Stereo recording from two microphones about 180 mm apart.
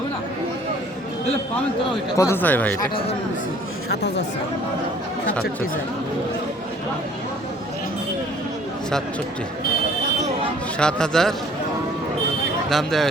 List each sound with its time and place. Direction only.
2.1 s speech: 15° left (ahead or behind)
3.8 s speech: 70° left (ahead or behind)
10.8 s a man's voice: 5° left (ahead or behind)
12.7 s a man's voice: centre (ahead or behind)